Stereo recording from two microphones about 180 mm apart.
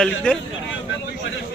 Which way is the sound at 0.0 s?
5° left (ahead or behind).